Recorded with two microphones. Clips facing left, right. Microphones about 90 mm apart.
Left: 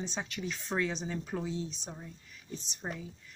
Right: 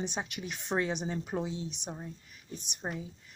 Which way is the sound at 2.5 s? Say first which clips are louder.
Left 1 dB; 60° right (ahead or behind).